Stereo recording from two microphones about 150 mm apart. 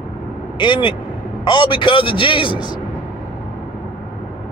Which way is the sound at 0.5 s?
30° left (ahead or behind).